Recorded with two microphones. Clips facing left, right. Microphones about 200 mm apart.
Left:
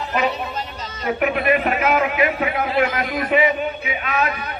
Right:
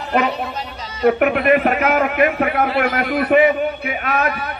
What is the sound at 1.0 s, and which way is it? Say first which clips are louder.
A man's voice: right 5 dB; 55° right (ahead or behind).